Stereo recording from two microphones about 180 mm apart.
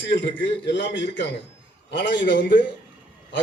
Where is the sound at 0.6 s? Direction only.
80° left.